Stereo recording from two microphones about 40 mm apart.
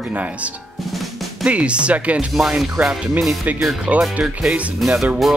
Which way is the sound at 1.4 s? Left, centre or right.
Right.